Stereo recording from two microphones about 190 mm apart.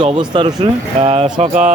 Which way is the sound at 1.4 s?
40° right (ahead or behind).